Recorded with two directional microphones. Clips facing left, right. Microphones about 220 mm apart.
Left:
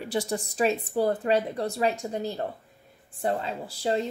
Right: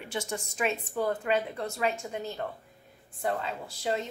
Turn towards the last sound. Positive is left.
turn(degrees=35)  # may be behind; listen again after turning